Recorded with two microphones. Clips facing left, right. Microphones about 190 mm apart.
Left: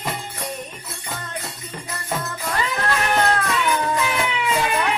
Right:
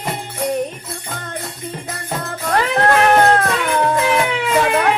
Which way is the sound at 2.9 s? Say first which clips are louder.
Right 7 dB; 65° right (ahead or behind).